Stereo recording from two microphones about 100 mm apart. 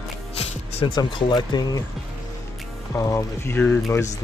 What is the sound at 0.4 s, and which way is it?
Music, 90° left.